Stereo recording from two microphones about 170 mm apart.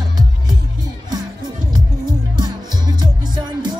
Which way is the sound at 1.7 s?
25° right (ahead or behind).